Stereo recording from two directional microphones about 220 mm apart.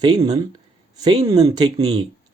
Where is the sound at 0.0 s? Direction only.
20° right (ahead or behind).